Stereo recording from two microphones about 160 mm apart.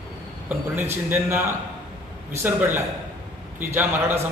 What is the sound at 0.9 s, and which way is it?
A man's voice, 15° right (ahead or behind).